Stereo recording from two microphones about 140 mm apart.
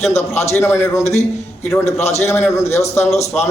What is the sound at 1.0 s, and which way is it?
Speech, 50° left (ahead or behind).